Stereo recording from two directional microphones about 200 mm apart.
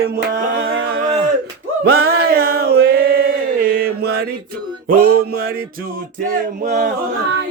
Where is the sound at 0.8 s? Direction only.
50° right (ahead or behind).